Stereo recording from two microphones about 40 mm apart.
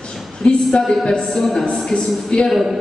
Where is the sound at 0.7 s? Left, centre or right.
Left.